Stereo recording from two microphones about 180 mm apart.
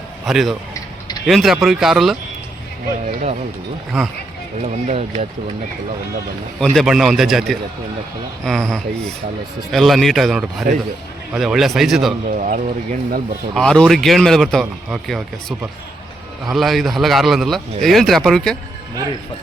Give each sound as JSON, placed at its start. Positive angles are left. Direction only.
{"t": 0.3, "sound": "speech", "side_deg": 0}
{"t": 3.1, "sound": "speech", "side_deg": -45}
{"t": 3.9, "sound": "speech", "side_deg": 0}
{"t": 4.6, "sound": "speech", "side_deg": -35}
{"t": 6.6, "sound": "speech", "side_deg": 0}
{"t": 12.4, "sound": "speech", "side_deg": -45}
{"t": 13.5, "sound": "speech", "side_deg": 5}